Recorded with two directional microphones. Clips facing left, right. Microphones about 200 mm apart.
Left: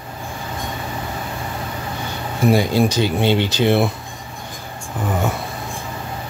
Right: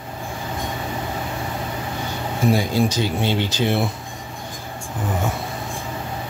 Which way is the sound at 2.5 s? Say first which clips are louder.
Left 3 dB; 70° left (ahead or behind).